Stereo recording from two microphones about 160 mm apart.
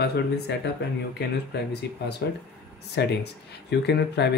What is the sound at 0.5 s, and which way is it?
Speech, 90° left.